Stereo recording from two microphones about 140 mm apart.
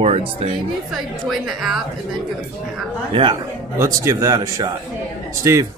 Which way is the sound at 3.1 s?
35° right (ahead or behind).